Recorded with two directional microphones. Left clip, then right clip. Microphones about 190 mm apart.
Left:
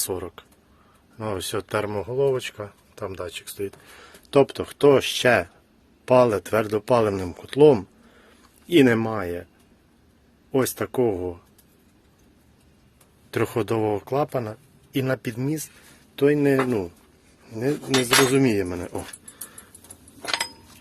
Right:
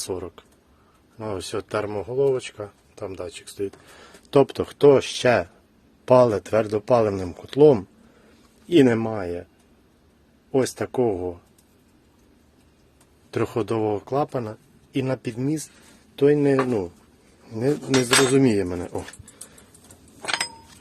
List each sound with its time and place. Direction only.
0.0 s speech: centre (ahead or behind)
10.5 s speech: 5° right (ahead or behind)
13.3 s speech: 5° right (ahead or behind)